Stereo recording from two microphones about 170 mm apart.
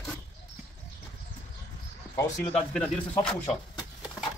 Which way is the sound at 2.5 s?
5° left (ahead or behind).